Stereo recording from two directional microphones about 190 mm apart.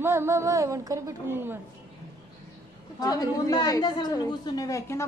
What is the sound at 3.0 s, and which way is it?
A woman's voice, 20° left (ahead or behind).